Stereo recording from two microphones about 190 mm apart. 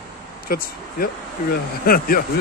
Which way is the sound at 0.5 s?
50° left (ahead or behind).